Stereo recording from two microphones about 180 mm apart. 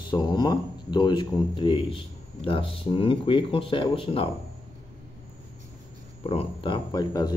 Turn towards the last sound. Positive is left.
turn(degrees=20)  # may be behind; listen again after turning